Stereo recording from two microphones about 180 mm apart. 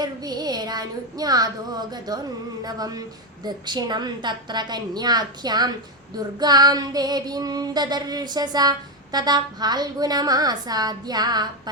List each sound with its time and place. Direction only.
0.0 s child singing: 20° right (ahead or behind)
2.6 s a woman's voice: 20° right (ahead or behind)